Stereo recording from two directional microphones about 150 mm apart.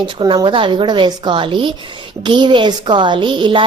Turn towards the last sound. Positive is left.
turn(degrees=-30)  # may be behind; listen again after turning